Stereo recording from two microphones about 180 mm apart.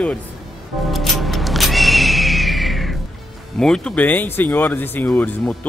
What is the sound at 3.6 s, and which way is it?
Speech, 5° left (ahead or behind).